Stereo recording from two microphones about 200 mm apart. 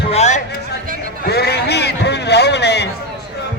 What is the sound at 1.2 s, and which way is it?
A man's voice, 55° left (ahead or behind).